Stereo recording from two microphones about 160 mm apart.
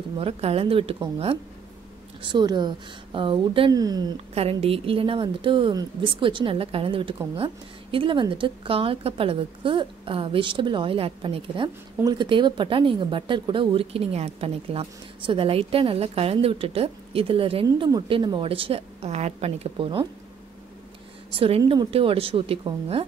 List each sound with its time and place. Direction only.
0.2 s a woman's voice: 35° right (ahead or behind)
4.4 s a woman's voice: 35° right (ahead or behind)
21.3 s a woman's voice: 35° right (ahead or behind)